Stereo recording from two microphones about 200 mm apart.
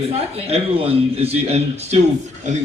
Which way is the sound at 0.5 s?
30° right (ahead or behind).